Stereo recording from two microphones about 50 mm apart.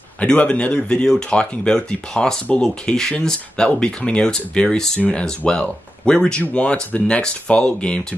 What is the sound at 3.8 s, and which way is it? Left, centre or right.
Speech, centre.